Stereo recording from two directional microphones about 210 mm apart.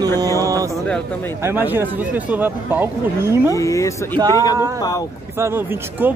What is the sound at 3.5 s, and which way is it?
Speech, 15° left (ahead or behind).